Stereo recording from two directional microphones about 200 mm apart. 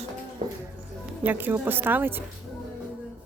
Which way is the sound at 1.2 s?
10° right (ahead or behind).